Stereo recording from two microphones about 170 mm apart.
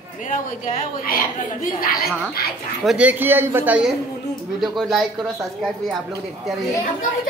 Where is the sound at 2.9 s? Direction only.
10° right (ahead or behind).